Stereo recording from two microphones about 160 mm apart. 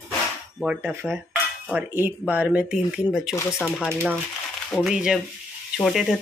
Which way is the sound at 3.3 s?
15° left (ahead or behind).